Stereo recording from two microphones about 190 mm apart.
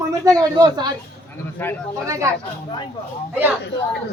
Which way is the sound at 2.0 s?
15° right (ahead or behind).